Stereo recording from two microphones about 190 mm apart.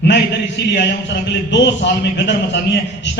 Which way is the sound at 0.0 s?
65° left (ahead or behind).